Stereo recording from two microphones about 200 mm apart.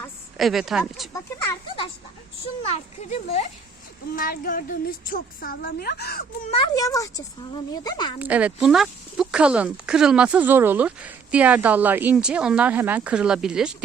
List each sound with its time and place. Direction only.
0.3 s speech: centre (ahead or behind)
2.6 s speech: 30° left (ahead or behind)
4.1 s a woman's voice: 45° left (ahead or behind)
6.5 s a woman's voice: 20° left (ahead or behind)
8.2 s speech: 5° right (ahead or behind)